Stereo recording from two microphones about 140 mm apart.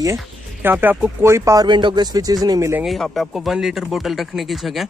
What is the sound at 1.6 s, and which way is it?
A man's voice, 35° right (ahead or behind).